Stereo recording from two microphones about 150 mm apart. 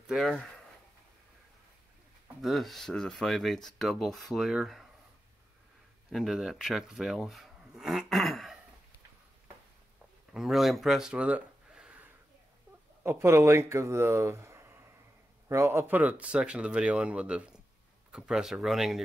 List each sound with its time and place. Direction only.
0.0 s speech: centre (ahead or behind)
2.4 s speech: centre (ahead or behind)
6.1 s speech: centre (ahead or behind)
10.3 s speech: centre (ahead or behind)